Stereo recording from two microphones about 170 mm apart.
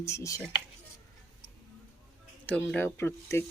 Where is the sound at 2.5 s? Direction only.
10° left (ahead or behind).